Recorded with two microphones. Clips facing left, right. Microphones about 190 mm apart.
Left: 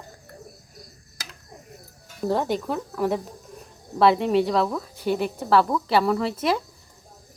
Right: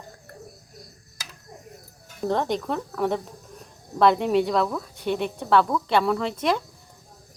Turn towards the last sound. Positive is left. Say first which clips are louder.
# left 1 dB
turn(degrees=5)  # may be behind; listen again after turning